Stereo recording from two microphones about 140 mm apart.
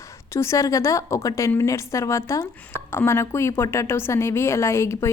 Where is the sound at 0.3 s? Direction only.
20° left (ahead or behind).